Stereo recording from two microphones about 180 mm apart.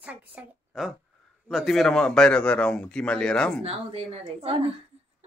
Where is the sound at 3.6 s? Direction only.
35° right (ahead or behind).